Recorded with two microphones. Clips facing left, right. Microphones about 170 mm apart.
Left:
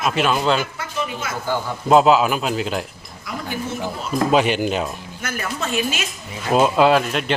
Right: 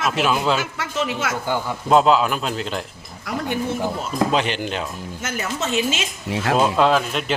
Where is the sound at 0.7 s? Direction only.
80° right.